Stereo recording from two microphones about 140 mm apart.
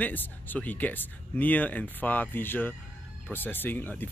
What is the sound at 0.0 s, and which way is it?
Speech, 10° left (ahead or behind).